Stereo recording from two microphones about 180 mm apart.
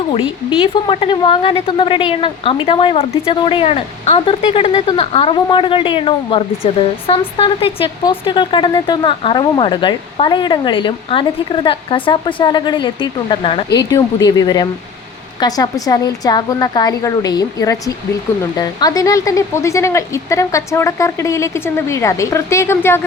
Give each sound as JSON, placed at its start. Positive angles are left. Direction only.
{"t": 0.1, "sound": "a woman's voice", "side_deg": 30}